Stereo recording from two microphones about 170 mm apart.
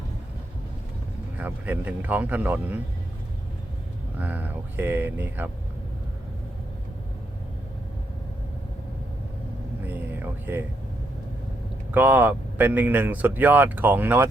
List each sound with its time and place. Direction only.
1.4 s speech: 10° right (ahead or behind)
4.2 s speech: 10° right (ahead or behind)
9.8 s a sound: 10° right (ahead or behind)
11.9 s speech: 10° right (ahead or behind)